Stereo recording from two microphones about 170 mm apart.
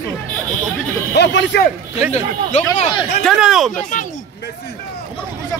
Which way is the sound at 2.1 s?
40° left (ahead or behind).